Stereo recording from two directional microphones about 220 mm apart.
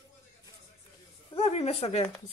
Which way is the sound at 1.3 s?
25° left (ahead or behind).